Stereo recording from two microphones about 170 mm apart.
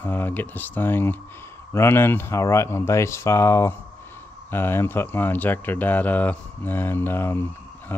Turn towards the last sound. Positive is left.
turn(degrees=15)  # may be behind; listen again after turning